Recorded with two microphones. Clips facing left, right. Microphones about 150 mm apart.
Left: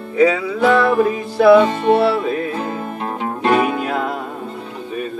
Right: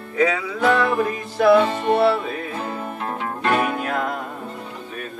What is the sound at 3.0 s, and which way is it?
Music, 25° left (ahead or behind).